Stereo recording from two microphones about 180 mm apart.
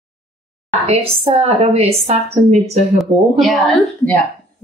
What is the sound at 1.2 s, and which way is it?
A woman's voice, 35° right (ahead or behind).